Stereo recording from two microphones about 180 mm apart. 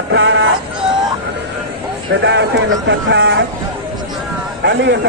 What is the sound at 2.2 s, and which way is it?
Speech, 80° right.